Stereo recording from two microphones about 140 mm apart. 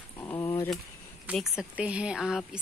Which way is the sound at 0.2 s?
20° left (ahead or behind).